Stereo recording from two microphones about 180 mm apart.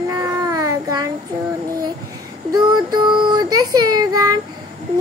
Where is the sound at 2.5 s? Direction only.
25° right (ahead or behind).